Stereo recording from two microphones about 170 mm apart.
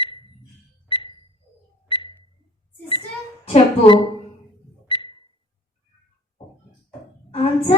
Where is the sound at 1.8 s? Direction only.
30° left (ahead or behind).